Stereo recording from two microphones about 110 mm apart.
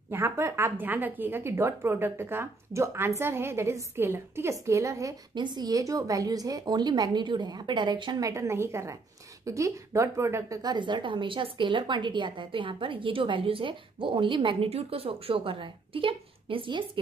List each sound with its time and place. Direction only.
0.1 s a woman's voice: 25° right (ahead or behind)
5.3 s a woman's voice: 40° right (ahead or behind); by 10.6 s 25° right (ahead or behind)
10.6 s a woman's voice: 45° right (ahead or behind)